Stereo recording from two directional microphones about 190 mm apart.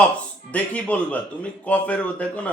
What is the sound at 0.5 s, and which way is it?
Speech, 10° left (ahead or behind).